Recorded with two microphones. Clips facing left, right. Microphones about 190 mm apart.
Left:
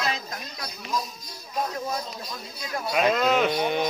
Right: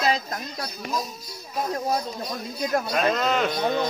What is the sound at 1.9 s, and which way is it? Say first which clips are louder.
Speech: right 5 dB; 50° right (ahead or behind).